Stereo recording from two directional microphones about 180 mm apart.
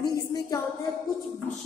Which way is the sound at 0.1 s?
20° left (ahead or behind).